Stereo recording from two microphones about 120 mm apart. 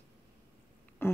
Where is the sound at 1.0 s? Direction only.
20° left (ahead or behind).